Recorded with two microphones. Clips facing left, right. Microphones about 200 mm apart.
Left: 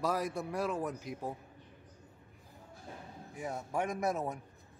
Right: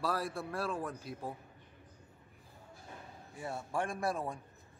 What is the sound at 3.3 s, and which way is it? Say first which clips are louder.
Speech: left 1 dB; 15° left (ahead or behind).